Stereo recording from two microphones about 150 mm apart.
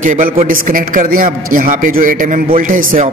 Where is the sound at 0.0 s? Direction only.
60° right (ahead or behind).